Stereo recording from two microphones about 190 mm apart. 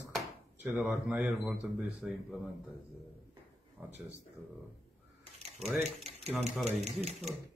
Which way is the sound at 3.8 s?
10° right (ahead or behind).